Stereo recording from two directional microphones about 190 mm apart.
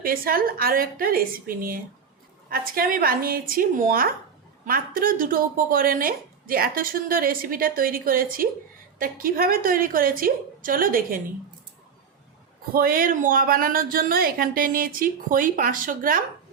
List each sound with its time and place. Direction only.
0.0 s speech: 50° right (ahead or behind)
12.7 s speech: 50° right (ahead or behind)